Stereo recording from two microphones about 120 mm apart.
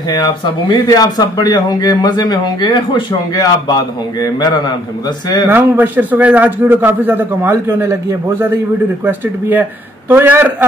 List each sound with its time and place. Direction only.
0.1 s a man's voice: 35° left (ahead or behind)
5.5 s a man's voice: 15° right (ahead or behind)